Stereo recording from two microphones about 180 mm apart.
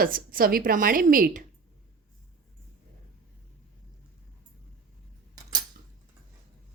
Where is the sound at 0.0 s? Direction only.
50° right (ahead or behind).